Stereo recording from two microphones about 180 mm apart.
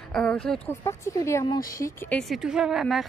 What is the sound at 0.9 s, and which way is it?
A woman's voice, 15° left (ahead or behind).